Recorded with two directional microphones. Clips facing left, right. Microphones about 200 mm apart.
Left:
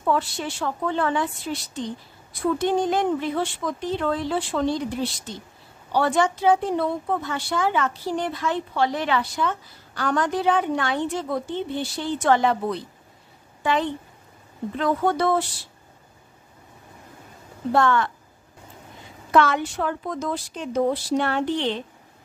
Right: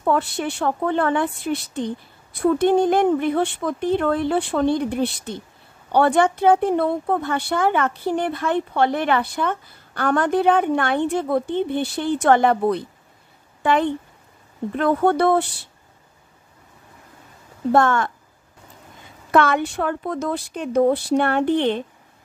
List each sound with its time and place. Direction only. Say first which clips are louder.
0.0 s speech: right 3 dB; 55° right (ahead or behind)
13.6 s a sound: right 4 dB; 55° right (ahead or behind)
14.8 s speech: right 4 dB; 55° right (ahead or behind)
17.7 s a woman's voice: right 2 dB; 50° right (ahead or behind)
19.3 s speech: right 2 dB; 55° right (ahead or behind)